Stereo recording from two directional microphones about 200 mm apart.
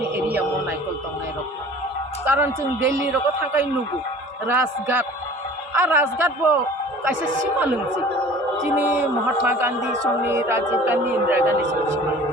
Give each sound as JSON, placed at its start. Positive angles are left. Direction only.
{"t": 0.0, "sound": "music", "side_deg": -10}
{"t": 2.2, "sound": "a woman's voice", "side_deg": -10}
{"t": 8.7, "sound": "a woman's voice", "side_deg": -10}